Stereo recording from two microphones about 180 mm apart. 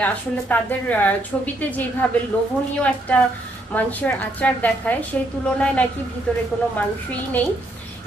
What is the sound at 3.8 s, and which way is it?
A woman's voice, 10° left (ahead or behind).